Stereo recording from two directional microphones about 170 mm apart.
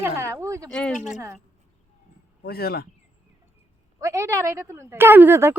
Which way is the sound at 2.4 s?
65° left (ahead or behind).